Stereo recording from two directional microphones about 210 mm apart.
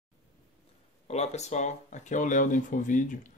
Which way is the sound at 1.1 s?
30° left (ahead or behind).